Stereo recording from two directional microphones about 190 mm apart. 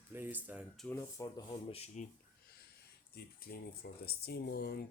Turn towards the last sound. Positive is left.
turn(degrees=60)  # may be behind; listen again after turning